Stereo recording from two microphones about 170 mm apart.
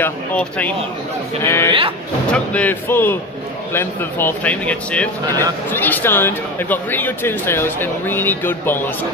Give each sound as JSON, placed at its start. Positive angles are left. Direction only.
{"t": 0.0, "sound": "speech", "side_deg": 10}
{"t": 1.7, "sound": "speech", "side_deg": -30}
{"t": 2.3, "sound": "speech", "side_deg": 10}